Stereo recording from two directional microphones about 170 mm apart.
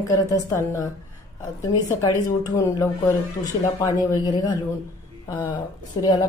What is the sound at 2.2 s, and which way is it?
Speech, 20° left (ahead or behind).